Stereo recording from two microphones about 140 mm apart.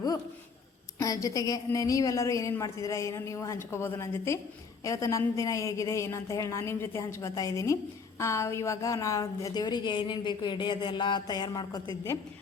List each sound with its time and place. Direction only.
0.9 s a woman's voice: 25° left (ahead or behind)